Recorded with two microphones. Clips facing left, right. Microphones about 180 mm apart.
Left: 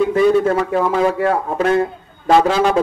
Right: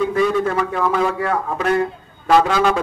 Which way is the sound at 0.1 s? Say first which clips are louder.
Left 4 dB; 30° left (ahead or behind).